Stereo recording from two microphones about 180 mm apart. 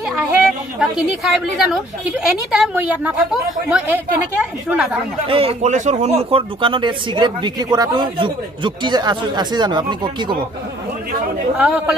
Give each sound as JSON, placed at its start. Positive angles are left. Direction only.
{"t": 0.3, "sound": "a woman's voice", "side_deg": -5}
{"t": 5.3, "sound": "speech", "side_deg": -30}
{"t": 11.5, "sound": "a woman's voice", "side_deg": -10}